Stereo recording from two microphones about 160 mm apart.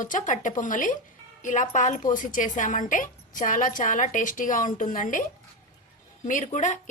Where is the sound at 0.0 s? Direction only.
55° left (ahead or behind).